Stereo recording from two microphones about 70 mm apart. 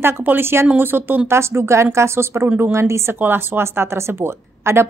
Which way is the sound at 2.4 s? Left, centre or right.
Right.